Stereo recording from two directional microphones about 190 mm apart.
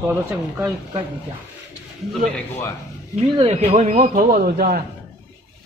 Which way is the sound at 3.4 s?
35° right (ahead or behind).